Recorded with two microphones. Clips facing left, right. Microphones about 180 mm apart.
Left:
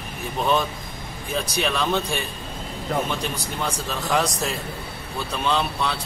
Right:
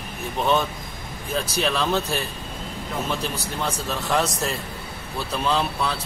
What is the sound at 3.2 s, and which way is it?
Speech, centre (ahead or behind).